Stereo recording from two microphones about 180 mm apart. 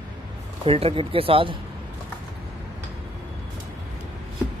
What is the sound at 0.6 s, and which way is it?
Speech, 30° right (ahead or behind).